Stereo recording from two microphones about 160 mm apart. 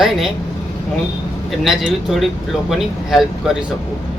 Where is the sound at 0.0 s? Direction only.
Centre (ahead or behind).